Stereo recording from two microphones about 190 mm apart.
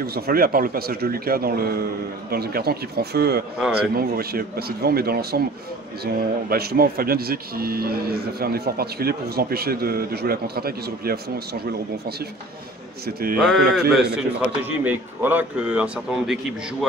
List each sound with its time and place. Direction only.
0.0 s speech: 55° right (ahead or behind)
13.0 s speech: 50° right (ahead or behind)
13.4 s a sound: centre (ahead or behind)
14.1 s a man's voice: 10° right (ahead or behind)